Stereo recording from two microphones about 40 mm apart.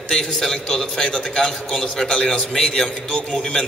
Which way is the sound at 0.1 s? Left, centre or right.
Centre.